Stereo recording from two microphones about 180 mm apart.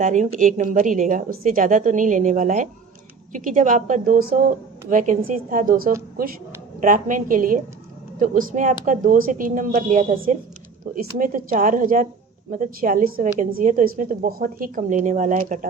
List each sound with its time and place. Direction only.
0.0 s a woman's voice: 40° right (ahead or behind)